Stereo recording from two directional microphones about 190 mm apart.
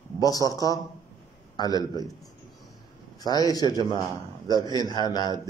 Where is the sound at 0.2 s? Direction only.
20° left (ahead or behind).